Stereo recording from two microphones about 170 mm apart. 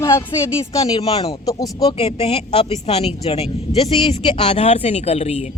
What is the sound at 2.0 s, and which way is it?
Speech, 35° left (ahead or behind).